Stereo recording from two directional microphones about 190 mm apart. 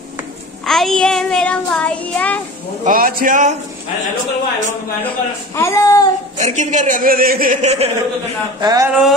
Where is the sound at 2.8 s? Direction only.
45° right (ahead or behind).